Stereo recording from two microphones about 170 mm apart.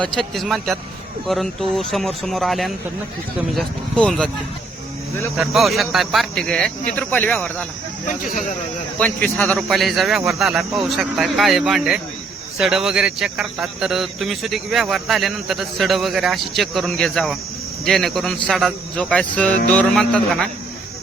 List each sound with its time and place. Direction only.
0.0 s speech: centre (ahead or behind)
5.4 s speech: centre (ahead or behind)
8.0 s speech: 50° left (ahead or behind)
9.0 s speech: 5° left (ahead or behind)